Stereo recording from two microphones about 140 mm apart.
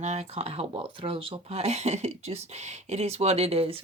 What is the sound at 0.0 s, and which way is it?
Speech, 55° right (ahead or behind).